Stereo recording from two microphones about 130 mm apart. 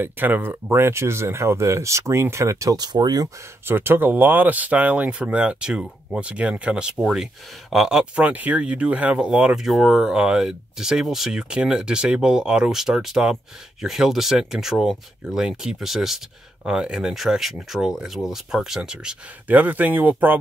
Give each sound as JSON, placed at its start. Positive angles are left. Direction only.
{"t": 0.0, "sound": "speech", "side_deg": -15}
{"t": 3.6, "sound": "speech", "side_deg": -15}